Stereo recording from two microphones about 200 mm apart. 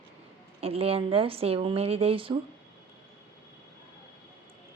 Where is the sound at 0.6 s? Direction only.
30° right (ahead or behind).